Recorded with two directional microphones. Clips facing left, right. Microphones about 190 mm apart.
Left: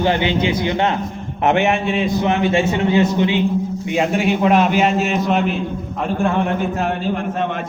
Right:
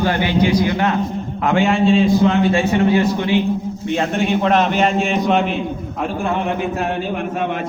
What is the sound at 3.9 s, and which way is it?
A man's voice, 10° left (ahead or behind).